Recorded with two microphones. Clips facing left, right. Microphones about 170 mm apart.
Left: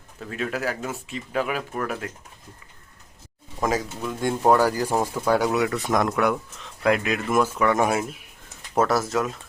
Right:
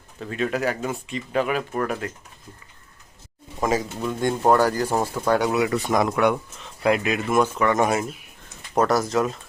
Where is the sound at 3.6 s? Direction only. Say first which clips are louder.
Right 2 dB; centre (ahead or behind).